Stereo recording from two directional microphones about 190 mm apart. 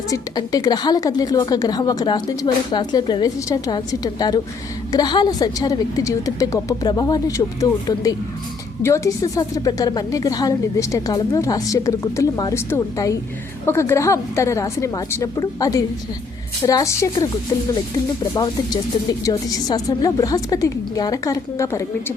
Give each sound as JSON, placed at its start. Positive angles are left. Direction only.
{"t": 0.1, "sound": "a woman's voice", "side_deg": 20}
{"t": 19.2, "sound": "a woman's voice", "side_deg": 20}